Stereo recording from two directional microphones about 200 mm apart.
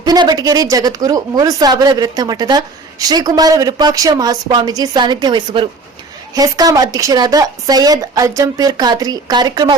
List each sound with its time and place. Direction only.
0.0 s a woman's voice: 20° right (ahead or behind)